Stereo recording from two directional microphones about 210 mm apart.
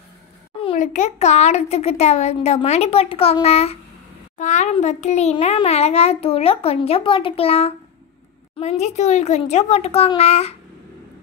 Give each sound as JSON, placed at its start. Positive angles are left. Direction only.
{"t": 0.6, "sound": "a child's voice", "side_deg": 30}